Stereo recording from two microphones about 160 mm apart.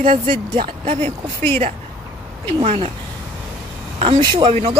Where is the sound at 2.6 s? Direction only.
40° right (ahead or behind).